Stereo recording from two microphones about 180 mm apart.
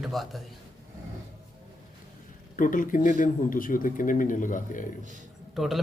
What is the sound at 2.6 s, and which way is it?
A man's voice, 50° left (ahead or behind).